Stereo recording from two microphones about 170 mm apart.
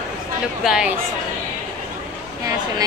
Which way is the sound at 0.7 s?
5° right (ahead or behind).